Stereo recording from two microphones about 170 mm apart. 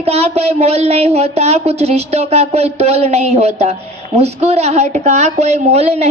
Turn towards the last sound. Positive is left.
turn(degrees=-40)  # may be behind; listen again after turning